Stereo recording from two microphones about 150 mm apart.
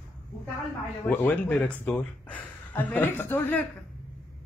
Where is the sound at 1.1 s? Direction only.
10° left (ahead or behind).